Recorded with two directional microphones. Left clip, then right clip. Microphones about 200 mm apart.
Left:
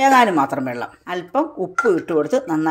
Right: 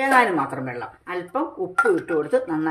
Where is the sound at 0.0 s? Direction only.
40° left (ahead or behind).